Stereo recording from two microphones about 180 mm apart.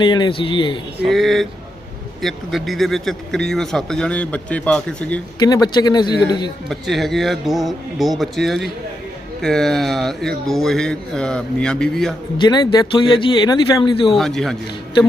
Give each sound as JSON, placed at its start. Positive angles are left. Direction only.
{"t": 0.0, "sound": "a man's voice", "side_deg": 25}
{"t": 1.0, "sound": "speech", "side_deg": 0}
{"t": 5.4, "sound": "a man's voice", "side_deg": 20}
{"t": 6.7, "sound": "speech", "side_deg": 0}
{"t": 12.4, "sound": "a man's voice", "side_deg": 25}
{"t": 14.1, "sound": "speech", "side_deg": 0}